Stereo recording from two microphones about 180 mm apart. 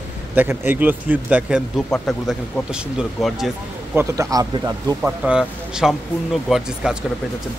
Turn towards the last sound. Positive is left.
turn(degrees=-5)  # may be behind; listen again after turning